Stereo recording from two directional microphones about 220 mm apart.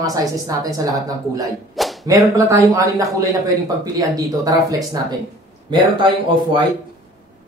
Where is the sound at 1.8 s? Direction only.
Centre (ahead or behind).